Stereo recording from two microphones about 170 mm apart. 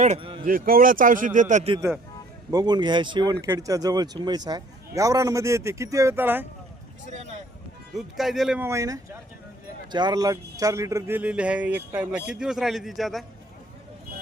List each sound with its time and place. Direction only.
0.2 s a sound: 30° right (ahead or behind)
0.4 s a man's voice: 55° right (ahead or behind)
2.5 s speech: 25° right (ahead or behind)
7.9 s a man's voice: centre (ahead or behind)
8.6 s a man's voice: 15° right (ahead or behind); by 13.2 s centre (ahead or behind)